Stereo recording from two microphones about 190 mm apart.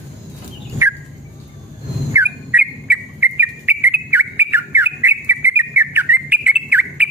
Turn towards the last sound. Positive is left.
turn(degrees=-10)  # may be behind; listen again after turning